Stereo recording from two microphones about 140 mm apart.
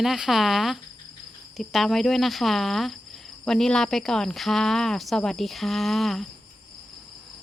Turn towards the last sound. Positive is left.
turn(degrees=0)  # may be behind; listen again after turning